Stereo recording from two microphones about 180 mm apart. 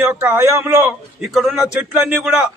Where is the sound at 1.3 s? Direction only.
Centre (ahead or behind).